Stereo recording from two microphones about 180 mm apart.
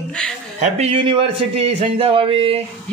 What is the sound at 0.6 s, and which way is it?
Speech, 35° right (ahead or behind).